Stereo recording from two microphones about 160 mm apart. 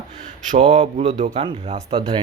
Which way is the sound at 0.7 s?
45° right (ahead or behind).